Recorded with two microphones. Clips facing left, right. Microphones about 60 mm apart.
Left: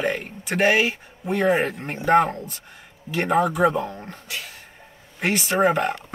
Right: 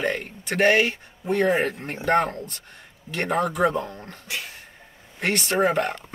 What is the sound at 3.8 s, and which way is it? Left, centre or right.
Speech, left.